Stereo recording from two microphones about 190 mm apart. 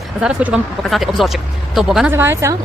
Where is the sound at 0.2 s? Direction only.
5° right (ahead or behind).